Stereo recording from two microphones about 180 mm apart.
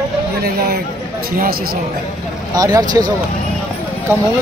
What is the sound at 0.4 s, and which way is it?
Speech, 60° right (ahead or behind).